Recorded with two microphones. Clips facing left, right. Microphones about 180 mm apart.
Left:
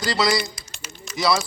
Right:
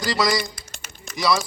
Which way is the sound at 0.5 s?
55° right (ahead or behind).